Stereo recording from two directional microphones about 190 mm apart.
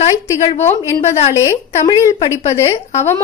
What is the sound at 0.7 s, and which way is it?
A woman's voice, 15° left (ahead or behind).